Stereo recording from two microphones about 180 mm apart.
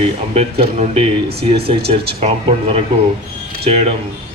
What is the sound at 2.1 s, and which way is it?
Speech, 35° right (ahead or behind).